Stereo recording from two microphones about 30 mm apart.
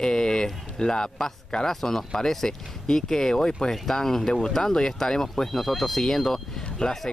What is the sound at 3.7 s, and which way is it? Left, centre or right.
Speech, centre.